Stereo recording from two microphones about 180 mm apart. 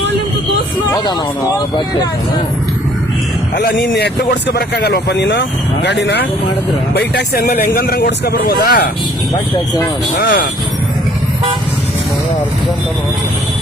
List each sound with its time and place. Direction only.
1.5 s speech: 20° left (ahead or behind)
3.8 s speech: 65° left (ahead or behind)